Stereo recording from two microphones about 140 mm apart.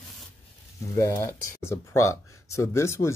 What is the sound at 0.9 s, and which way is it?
Speech, 20° left (ahead or behind).